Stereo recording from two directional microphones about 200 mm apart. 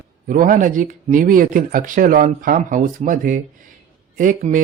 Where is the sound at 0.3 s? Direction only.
40° right (ahead or behind).